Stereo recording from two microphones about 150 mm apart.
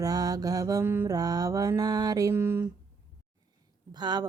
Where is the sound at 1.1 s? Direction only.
25° right (ahead or behind).